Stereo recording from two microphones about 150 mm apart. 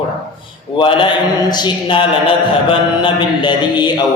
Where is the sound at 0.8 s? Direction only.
35° left (ahead or behind).